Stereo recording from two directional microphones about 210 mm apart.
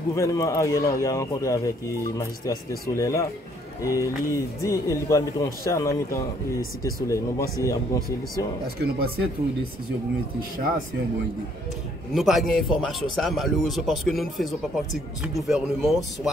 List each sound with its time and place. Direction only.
0.1 s speech: 15° left (ahead or behind)
8.8 s speech: 45° right (ahead or behind)
12.1 s a man's voice: centre (ahead or behind)